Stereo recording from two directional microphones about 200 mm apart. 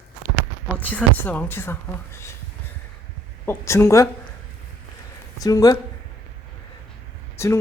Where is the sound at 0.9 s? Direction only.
5° left (ahead or behind).